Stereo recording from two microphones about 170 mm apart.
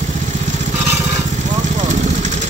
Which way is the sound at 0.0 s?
45° right (ahead or behind).